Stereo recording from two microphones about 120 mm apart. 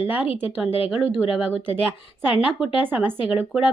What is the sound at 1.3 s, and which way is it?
Speech, 15° right (ahead or behind).